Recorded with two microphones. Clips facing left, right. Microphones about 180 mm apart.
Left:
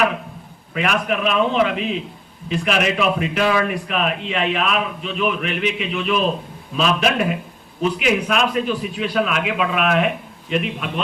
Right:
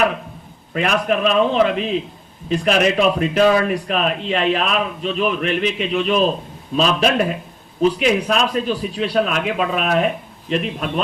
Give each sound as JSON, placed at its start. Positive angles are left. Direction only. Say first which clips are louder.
{"t": 0.7, "sound": "speech", "louder": "right 3 dB", "side_deg": -35}